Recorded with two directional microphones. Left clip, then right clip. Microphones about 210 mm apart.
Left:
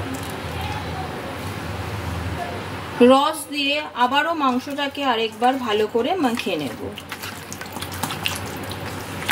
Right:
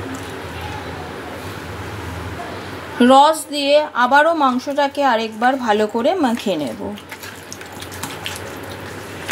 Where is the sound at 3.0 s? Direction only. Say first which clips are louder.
Right 4 dB; 30° right (ahead or behind).